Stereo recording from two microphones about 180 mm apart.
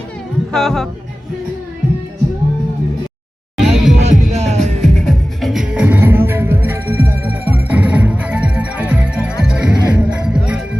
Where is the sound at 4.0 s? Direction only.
40° right (ahead or behind).